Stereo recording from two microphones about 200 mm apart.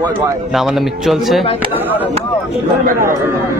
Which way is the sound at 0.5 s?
Centre (ahead or behind).